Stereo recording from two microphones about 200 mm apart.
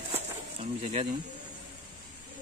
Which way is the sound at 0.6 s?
30° right (ahead or behind).